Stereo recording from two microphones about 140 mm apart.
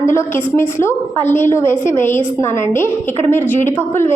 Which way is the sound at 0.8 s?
15° left (ahead or behind).